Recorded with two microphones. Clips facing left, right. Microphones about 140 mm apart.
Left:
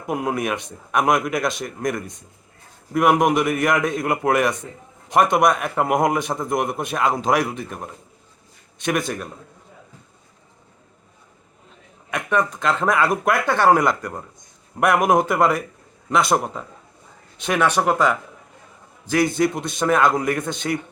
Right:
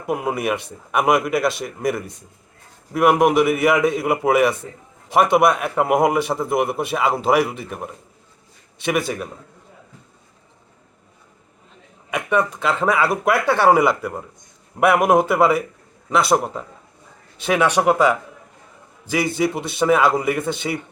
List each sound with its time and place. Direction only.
0.0 s a man's voice: centre (ahead or behind)
12.1 s a man's voice: 5° right (ahead or behind)